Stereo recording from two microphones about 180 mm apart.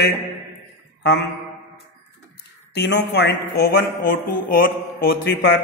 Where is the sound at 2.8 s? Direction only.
75° left (ahead or behind).